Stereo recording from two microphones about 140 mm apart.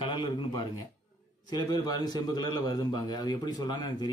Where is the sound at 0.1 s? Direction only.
30° left (ahead or behind).